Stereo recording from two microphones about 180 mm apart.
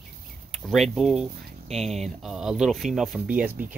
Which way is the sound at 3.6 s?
50° right (ahead or behind).